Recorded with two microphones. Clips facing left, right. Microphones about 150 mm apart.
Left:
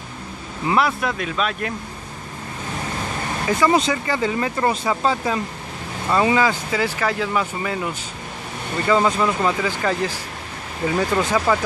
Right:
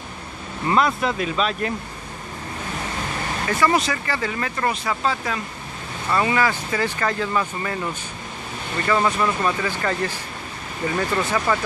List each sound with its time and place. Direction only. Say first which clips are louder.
0.7 s speech: even; 5° left (ahead or behind)
3.4 s speech: left 3 dB; 20° left (ahead or behind)